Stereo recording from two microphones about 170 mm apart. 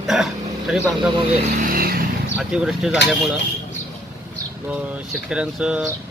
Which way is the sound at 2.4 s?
5° right (ahead or behind).